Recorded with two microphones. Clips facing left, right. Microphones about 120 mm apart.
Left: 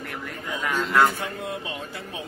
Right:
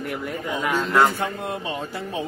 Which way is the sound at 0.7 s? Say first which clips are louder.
Right 1 dB; 20° right (ahead or behind).